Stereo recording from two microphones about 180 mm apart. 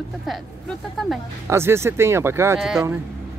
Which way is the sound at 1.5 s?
15° right (ahead or behind).